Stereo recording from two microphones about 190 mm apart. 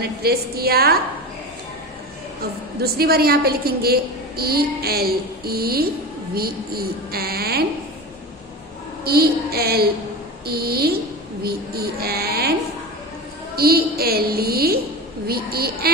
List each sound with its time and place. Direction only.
0.0 s a woman's voice: 55° right (ahead or behind)
2.8 s a woman's voice: 55° right (ahead or behind)
9.0 s speech: 55° right (ahead or behind)
13.6 s a woman's voice: 55° right (ahead or behind)